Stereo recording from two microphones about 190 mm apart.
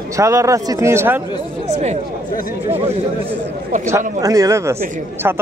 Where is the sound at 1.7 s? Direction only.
35° right (ahead or behind).